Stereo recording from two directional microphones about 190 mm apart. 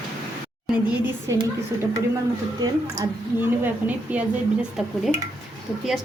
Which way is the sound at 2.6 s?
20° right (ahead or behind).